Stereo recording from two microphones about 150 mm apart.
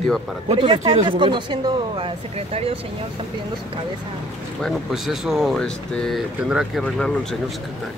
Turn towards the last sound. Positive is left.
turn(degrees=5)  # may be behind; listen again after turning